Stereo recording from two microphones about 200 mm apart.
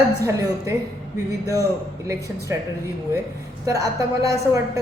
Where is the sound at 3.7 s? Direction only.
15° right (ahead or behind).